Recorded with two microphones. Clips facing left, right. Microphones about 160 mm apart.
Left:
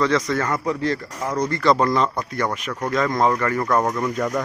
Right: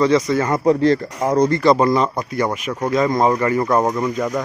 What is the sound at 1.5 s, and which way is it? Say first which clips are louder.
A man's voice: right 4 dB; 10° right (ahead or behind).